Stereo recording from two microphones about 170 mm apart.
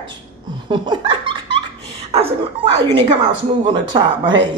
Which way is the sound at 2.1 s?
35° right (ahead or behind).